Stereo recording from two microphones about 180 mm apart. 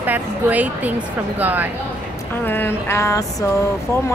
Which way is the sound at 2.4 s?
10° left (ahead or behind).